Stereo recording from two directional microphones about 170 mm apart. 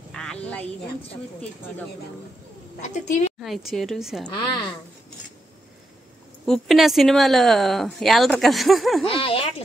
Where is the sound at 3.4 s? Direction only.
Centre (ahead or behind).